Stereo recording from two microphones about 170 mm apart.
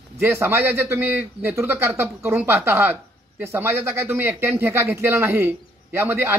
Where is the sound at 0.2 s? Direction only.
15° right (ahead or behind).